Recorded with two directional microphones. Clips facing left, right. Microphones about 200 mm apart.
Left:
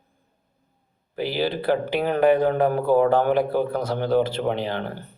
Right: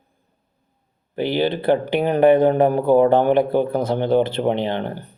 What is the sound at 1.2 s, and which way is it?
Speech, 20° right (ahead or behind).